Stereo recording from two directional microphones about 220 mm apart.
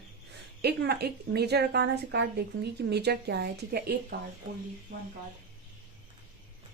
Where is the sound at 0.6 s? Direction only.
45° right (ahead or behind).